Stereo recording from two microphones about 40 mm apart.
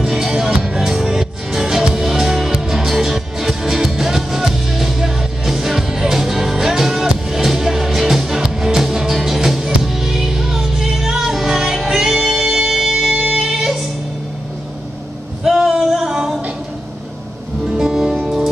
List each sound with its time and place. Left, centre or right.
0.0 s music: centre
15.4 s singing: centre
17.6 s music: centre